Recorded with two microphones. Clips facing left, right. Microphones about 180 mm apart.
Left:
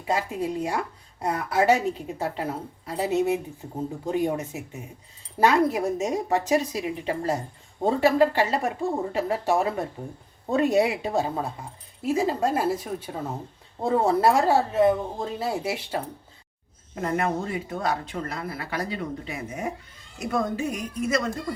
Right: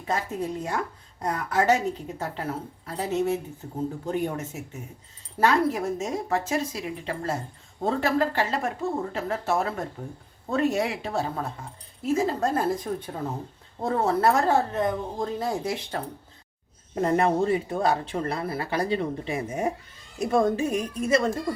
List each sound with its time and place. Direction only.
0.0 s speech: 10° left (ahead or behind)
16.9 s a woman's voice: 30° right (ahead or behind)